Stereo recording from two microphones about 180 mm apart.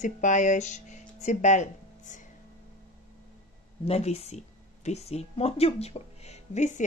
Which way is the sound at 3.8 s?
35° left (ahead or behind).